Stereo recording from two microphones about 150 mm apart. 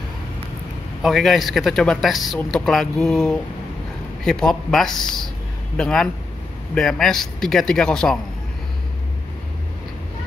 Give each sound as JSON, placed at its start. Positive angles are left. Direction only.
{"t": 1.0, "sound": "speech", "side_deg": 0}